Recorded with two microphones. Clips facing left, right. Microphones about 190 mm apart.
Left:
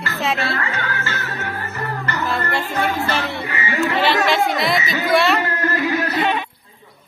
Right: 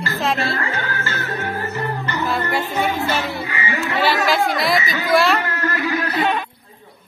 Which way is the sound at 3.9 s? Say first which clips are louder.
Right 1 dB; 5° right (ahead or behind).